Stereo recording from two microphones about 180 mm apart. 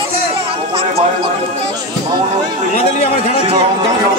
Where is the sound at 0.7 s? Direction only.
35° right (ahead or behind).